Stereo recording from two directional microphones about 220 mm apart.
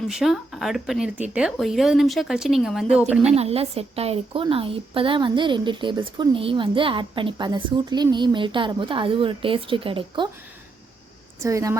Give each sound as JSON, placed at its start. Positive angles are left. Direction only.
{"t": 0.1, "sound": "speech", "side_deg": 0}
{"t": 3.2, "sound": "a woman's voice", "side_deg": -30}
{"t": 11.3, "sound": "speech", "side_deg": -15}